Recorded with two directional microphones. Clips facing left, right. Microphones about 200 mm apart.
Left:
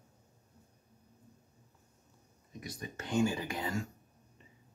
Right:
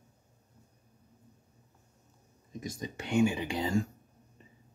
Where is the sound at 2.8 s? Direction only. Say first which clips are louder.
Right 4 dB; 25° right (ahead or behind).